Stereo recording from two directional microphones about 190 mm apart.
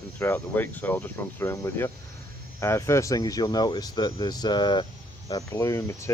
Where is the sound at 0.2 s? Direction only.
10° left (ahead or behind).